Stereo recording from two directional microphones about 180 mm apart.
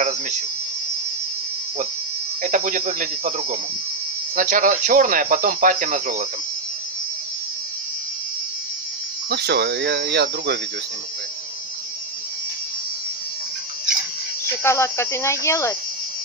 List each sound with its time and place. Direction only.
2.4 s speech: 45° right (ahead or behind)
9.3 s speech: 65° right (ahead or behind)
14.6 s speech: 15° left (ahead or behind)